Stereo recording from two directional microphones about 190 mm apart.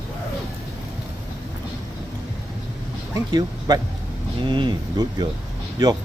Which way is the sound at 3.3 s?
20° right (ahead or behind).